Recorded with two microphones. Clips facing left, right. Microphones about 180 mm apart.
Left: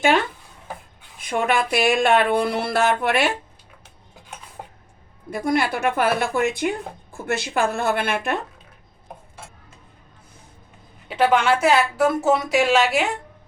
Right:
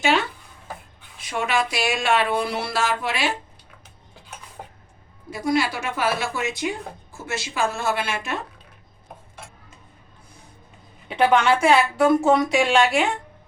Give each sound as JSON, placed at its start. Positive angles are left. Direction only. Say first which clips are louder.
{"t": 0.0, "sound": "speech", "louder": "left 3 dB", "side_deg": 50}
{"t": 5.3, "sound": "speech", "louder": "left 1 dB", "side_deg": 55}
{"t": 11.1, "sound": "speech", "louder": "even", "side_deg": 5}